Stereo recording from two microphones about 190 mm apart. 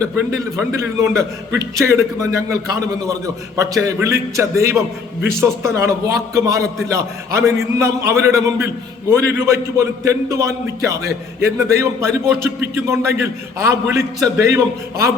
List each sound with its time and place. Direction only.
0.3 s a man's voice: 15° right (ahead or behind)